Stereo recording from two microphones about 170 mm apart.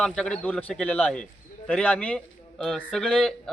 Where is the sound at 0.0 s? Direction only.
5° left (ahead or behind).